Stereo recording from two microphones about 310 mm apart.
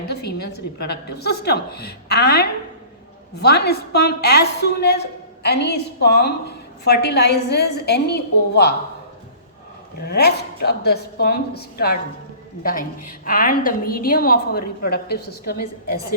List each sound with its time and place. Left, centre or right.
0.1 s a woman's voice: left
10.0 s a woman's voice: left